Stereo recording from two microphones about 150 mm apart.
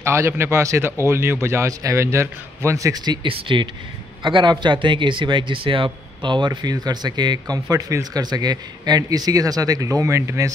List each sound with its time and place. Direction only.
0.0 s a man's voice: 15° right (ahead or behind)
3.3 s a man's voice: 35° right (ahead or behind)